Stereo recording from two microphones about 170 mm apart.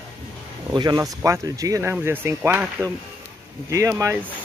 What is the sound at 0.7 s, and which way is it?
Speech, 25° right (ahead or behind).